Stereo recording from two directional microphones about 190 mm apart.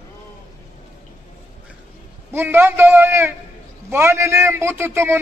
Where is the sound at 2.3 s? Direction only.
10° right (ahead or behind).